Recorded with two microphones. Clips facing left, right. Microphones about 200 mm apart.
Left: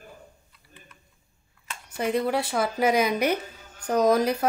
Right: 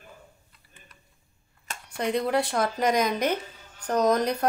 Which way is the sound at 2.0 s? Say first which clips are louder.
Even; 5° left (ahead or behind).